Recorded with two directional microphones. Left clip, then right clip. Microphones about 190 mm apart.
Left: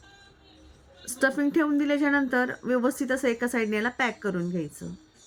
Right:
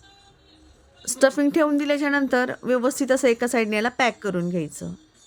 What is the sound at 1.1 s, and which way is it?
Speech, 45° right (ahead or behind).